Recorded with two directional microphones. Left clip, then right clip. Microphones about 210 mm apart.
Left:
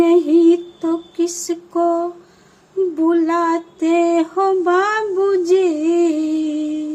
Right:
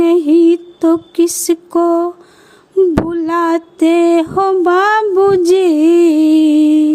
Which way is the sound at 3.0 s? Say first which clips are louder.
Right 1 dB; 45° right (ahead or behind).